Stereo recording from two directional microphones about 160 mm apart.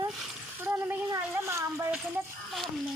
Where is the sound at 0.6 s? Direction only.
10° right (ahead or behind).